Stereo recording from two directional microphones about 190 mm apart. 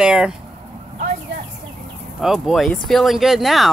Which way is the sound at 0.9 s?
40° right (ahead or behind).